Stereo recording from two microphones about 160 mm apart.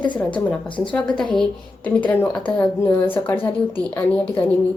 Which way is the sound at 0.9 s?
5° left (ahead or behind).